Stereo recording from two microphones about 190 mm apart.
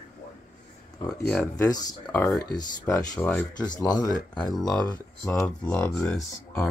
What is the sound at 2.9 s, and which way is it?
Speech, 5° left (ahead or behind).